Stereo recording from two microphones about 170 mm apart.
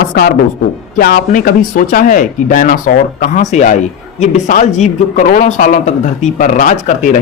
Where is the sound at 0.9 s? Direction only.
60° left (ahead or behind).